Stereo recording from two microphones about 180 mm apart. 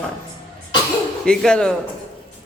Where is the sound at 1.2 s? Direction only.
5° left (ahead or behind).